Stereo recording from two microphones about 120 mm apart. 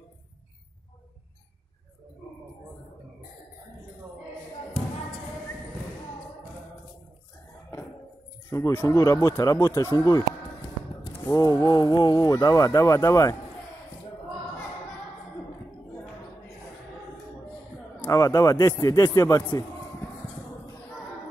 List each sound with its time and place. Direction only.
8.5 s speech: 25° left (ahead or behind)
11.2 s speech: 30° left (ahead or behind)
18.0 s speech: 25° left (ahead or behind)